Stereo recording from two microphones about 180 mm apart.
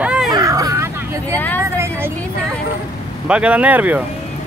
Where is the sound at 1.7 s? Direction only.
15° right (ahead or behind).